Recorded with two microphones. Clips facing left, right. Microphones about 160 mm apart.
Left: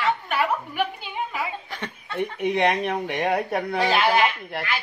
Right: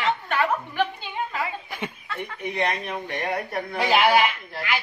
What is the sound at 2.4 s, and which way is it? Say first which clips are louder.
Speech: left 5 dB; 75° left (ahead or behind).